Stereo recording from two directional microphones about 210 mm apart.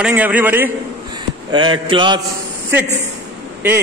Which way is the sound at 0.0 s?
5° right (ahead or behind).